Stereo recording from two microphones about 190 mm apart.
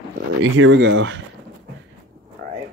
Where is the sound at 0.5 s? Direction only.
80° right.